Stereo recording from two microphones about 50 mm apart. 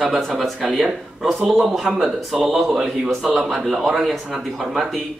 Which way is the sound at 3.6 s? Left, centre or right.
Centre.